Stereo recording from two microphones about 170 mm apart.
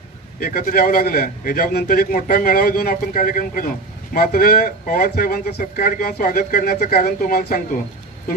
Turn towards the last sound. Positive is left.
turn(degrees=60)  # may be behind; listen again after turning